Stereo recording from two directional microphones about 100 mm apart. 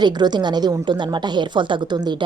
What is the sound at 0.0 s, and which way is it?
Speech, 45° right (ahead or behind).